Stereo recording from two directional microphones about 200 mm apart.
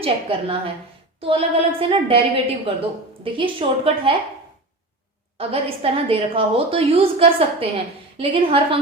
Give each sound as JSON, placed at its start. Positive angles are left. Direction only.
{"t": 0.0, "sound": "a woman's voice", "side_deg": -25}
{"t": 5.4, "sound": "a woman's voice", "side_deg": -30}